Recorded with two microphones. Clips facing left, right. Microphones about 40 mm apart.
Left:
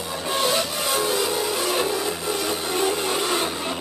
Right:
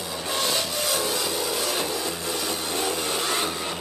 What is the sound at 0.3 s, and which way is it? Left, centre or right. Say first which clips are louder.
Music: left 4 dB; centre.